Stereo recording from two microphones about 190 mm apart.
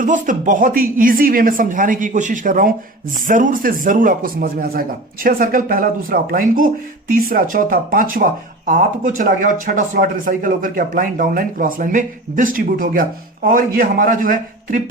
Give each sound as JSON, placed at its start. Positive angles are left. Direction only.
{"t": 0.0, "sound": "speech", "side_deg": -40}